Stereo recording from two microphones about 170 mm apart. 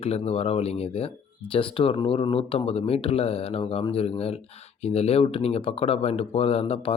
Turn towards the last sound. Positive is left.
turn(degrees=35)  # may be behind; listen again after turning